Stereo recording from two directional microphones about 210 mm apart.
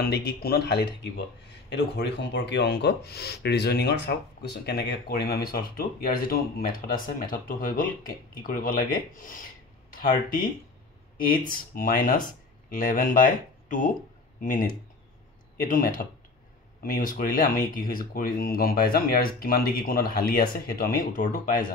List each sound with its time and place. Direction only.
0.0 s speech: 50° left (ahead or behind)
11.7 s speech: 40° left (ahead or behind)